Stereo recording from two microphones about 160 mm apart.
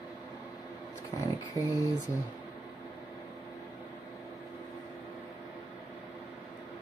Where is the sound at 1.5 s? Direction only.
20° left (ahead or behind).